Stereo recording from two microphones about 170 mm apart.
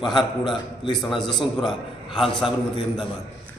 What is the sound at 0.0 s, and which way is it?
Speech, 30° left (ahead or behind).